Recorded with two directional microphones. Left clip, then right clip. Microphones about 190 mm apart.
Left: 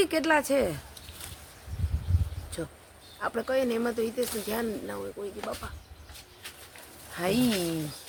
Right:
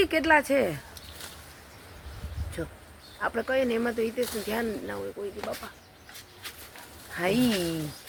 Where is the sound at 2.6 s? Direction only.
Centre (ahead or behind).